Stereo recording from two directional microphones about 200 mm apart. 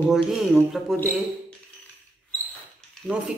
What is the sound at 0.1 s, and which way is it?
Speech, centre (ahead or behind).